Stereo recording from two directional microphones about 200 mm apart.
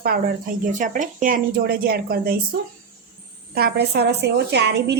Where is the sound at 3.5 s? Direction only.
50° right (ahead or behind).